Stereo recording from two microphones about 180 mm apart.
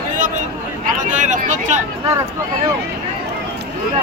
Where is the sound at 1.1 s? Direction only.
45° right (ahead or behind).